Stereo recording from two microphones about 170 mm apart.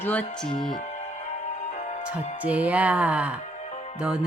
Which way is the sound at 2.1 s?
10° right (ahead or behind).